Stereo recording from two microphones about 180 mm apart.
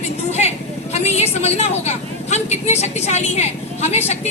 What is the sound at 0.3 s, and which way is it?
Vehicle, 40° left (ahead or behind).